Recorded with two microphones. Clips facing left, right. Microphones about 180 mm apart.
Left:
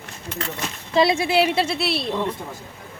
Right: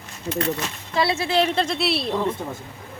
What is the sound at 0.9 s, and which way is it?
Speech, 15° left (ahead or behind).